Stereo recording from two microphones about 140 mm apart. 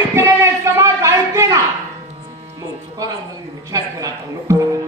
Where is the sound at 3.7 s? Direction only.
25° right (ahead or behind).